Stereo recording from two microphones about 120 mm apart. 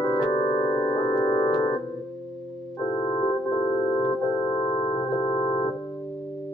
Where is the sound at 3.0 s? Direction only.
45° left (ahead or behind).